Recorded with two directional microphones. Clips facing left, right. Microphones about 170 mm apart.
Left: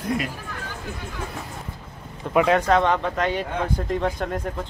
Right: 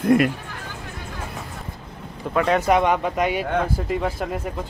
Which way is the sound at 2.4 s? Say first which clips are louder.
Right 1 dB; centre (ahead or behind).